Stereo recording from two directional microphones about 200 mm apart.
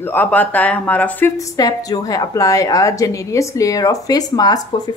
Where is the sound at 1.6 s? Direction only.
20° left (ahead or behind).